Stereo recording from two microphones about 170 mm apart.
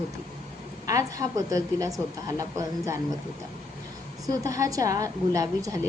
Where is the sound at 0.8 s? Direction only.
20° right (ahead or behind).